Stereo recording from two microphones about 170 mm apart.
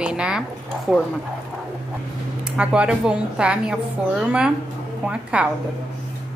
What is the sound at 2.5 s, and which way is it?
Speech, 5° right (ahead or behind).